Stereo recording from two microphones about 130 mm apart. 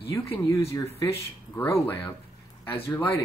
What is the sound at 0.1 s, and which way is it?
Speech, 25° left (ahead or behind).